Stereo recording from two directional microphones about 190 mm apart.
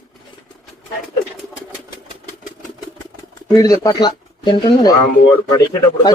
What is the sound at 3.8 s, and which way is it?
Speech, 25° left (ahead or behind).